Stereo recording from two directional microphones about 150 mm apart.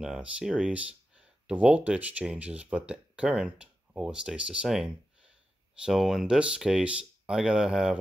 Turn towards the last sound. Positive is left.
turn(degrees=-5)  # may be behind; listen again after turning